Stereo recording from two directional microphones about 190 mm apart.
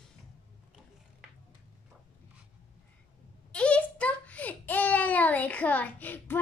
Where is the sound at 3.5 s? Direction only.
5° left (ahead or behind).